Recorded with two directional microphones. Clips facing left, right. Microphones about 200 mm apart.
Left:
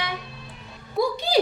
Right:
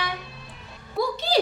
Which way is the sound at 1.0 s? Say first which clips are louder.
Left 2 dB; 15° left (ahead or behind).